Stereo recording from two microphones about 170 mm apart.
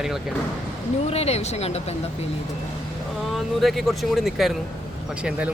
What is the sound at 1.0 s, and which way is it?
Speech, 35° left (ahead or behind).